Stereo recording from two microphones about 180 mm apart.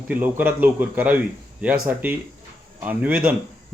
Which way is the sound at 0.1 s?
10° right (ahead or behind).